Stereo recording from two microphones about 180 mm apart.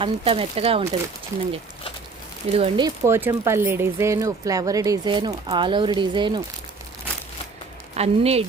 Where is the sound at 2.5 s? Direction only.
35° right (ahead or behind).